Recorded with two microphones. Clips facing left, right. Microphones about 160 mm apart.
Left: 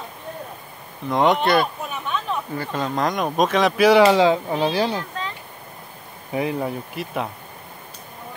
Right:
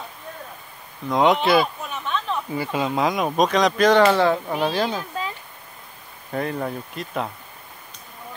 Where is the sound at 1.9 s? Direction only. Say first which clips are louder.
Even; 10° left (ahead or behind).